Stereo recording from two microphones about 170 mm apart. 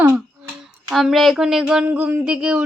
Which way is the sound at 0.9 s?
Centre (ahead or behind).